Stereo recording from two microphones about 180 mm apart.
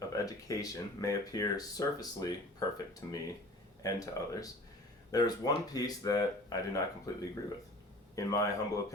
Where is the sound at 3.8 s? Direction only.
20° left (ahead or behind).